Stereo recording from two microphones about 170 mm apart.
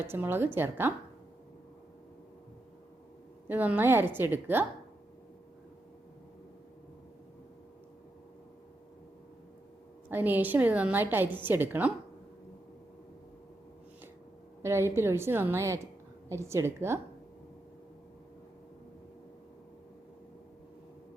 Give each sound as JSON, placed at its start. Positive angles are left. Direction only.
{"t": 0.0, "sound": "a woman's voice", "side_deg": -15}
{"t": 3.5, "sound": "a woman's voice", "side_deg": -10}
{"t": 10.1, "sound": "a woman's voice", "side_deg": -10}
{"t": 14.6, "sound": "a woman's voice", "side_deg": -15}